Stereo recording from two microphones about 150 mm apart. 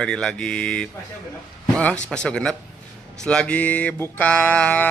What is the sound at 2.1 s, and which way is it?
A man's voice, 5° left (ahead or behind).